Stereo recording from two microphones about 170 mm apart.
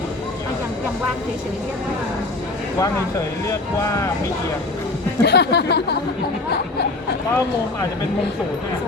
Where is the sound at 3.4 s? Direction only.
20° left (ahead or behind).